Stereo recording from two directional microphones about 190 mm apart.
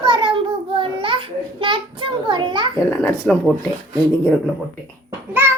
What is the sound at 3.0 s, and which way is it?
Speech, 5° left (ahead or behind).